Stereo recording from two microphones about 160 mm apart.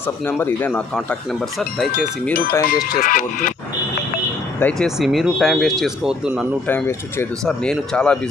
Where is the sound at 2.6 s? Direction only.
60° left (ahead or behind).